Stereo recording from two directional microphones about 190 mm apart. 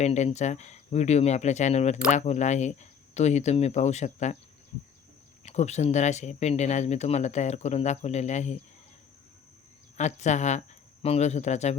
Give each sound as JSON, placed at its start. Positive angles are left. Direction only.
{"t": 0.0, "sound": "speech", "side_deg": 35}
{"t": 5.5, "sound": "speech", "side_deg": 35}
{"t": 10.0, "sound": "speech", "side_deg": 40}